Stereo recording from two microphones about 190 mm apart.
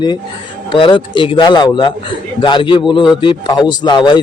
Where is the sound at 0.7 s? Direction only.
25° left (ahead or behind).